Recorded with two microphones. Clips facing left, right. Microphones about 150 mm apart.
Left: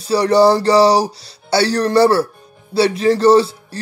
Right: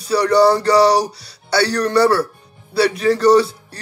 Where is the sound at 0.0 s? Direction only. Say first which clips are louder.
Left 1 dB; 25° left (ahead or behind).